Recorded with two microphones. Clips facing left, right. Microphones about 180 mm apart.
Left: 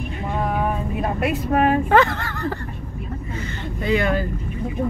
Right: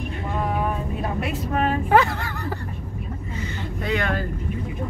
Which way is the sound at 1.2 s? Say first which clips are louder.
Left 6 dB; 60° left (ahead or behind).